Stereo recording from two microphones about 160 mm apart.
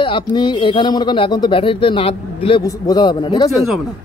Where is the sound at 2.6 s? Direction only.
25° left (ahead or behind).